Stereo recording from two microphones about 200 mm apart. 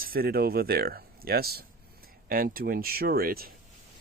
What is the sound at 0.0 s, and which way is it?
Speech, 50° right (ahead or behind).